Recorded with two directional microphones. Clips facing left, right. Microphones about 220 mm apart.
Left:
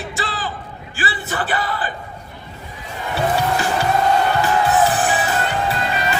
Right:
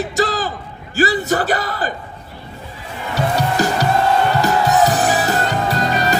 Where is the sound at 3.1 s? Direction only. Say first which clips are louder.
Right 1 dB; 40° right (ahead or behind).